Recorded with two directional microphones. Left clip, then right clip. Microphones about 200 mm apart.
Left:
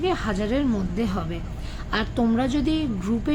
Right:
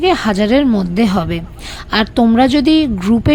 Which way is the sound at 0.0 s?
50° right (ahead or behind).